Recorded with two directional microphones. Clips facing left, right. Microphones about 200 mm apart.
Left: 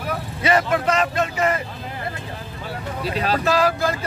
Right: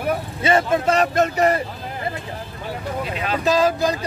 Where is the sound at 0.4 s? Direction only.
25° right (ahead or behind).